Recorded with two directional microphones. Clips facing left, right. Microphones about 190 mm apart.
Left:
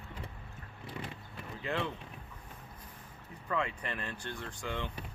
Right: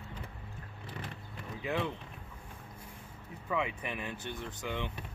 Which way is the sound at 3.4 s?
10° right (ahead or behind).